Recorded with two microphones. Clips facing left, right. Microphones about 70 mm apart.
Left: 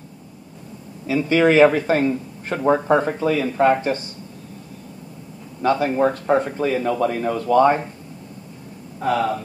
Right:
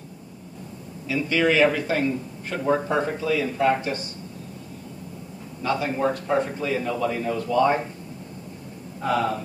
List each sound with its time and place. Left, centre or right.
1.0 s a man's voice: left
5.6 s a man's voice: left
9.0 s a man's voice: left